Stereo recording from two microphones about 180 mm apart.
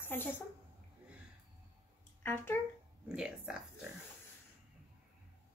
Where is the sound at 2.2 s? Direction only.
10° left (ahead or behind).